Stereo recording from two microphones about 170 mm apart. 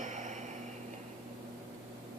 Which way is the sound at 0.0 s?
45° right (ahead or behind).